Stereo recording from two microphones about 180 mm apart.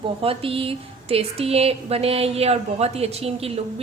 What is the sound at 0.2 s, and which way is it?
Speech, 30° right (ahead or behind).